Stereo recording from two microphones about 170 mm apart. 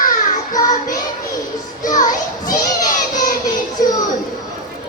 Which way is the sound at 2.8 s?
50° left (ahead or behind).